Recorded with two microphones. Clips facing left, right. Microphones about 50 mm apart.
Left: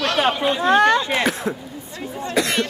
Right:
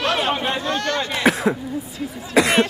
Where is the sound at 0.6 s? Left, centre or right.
Left.